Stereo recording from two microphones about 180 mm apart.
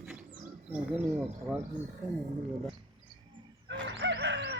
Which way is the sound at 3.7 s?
75° right (ahead or behind).